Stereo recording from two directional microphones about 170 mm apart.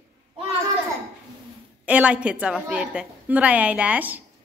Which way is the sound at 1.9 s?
10° right (ahead or behind).